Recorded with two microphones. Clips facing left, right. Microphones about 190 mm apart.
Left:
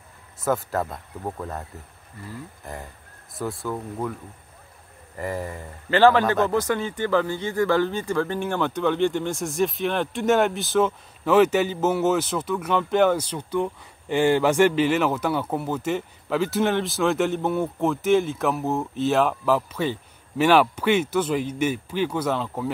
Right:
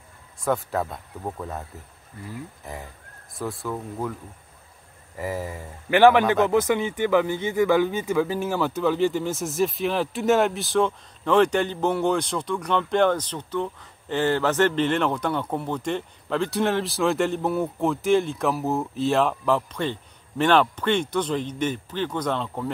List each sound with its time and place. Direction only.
0.4 s speech: centre (ahead or behind)
5.1 s speech: 5° right (ahead or behind)
5.9 s a man's voice: 15° right (ahead or behind); by 22.7 s 5° left (ahead or behind)